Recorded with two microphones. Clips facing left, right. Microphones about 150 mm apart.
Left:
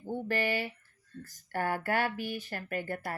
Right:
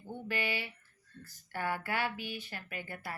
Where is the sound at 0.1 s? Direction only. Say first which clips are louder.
Left 6 dB; 45° left (ahead or behind).